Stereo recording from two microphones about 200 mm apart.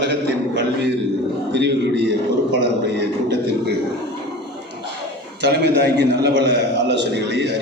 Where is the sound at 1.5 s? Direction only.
55° right (ahead or behind).